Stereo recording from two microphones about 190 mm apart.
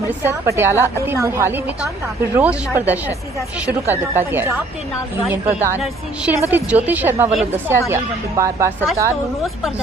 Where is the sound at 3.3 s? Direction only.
15° left (ahead or behind).